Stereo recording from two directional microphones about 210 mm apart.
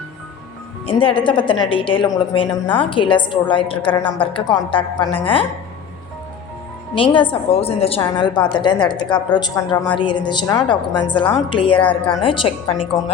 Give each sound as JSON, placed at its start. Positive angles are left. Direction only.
{"t": 0.9, "sound": "a woman's voice", "side_deg": 25}
{"t": 6.9, "sound": "a woman's voice", "side_deg": 25}